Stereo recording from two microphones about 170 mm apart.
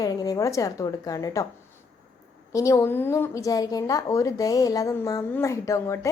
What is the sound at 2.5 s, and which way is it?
A woman's voice, 20° left (ahead or behind).